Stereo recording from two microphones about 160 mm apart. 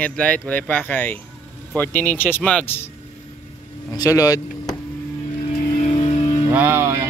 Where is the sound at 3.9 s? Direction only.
20° left (ahead or behind).